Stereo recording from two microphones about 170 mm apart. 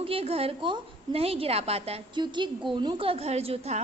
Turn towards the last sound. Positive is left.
turn(degrees=-35)  # may be behind; listen again after turning